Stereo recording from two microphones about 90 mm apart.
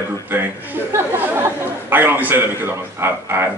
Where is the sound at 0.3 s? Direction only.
25° right (ahead or behind).